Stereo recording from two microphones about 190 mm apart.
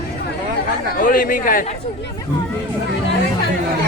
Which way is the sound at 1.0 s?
45° left (ahead or behind).